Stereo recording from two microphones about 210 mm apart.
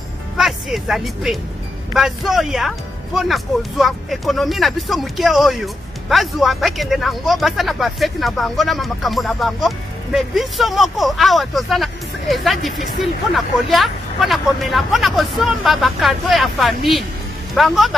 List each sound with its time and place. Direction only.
0.4 s speech: centre (ahead or behind)